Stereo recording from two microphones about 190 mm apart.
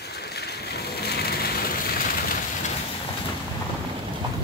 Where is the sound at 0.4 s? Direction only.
60° left (ahead or behind).